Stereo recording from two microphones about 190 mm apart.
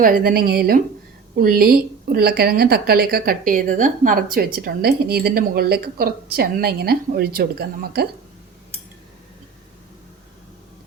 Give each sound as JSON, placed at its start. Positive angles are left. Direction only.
{"t": 0.0, "sound": "a woman's voice", "side_deg": -50}